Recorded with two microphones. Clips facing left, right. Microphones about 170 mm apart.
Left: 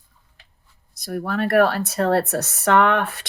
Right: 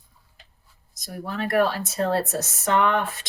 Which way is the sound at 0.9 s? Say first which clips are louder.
Left 6 dB; 60° left (ahead or behind).